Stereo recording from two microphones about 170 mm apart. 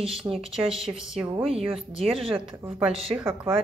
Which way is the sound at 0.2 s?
Centre (ahead or behind).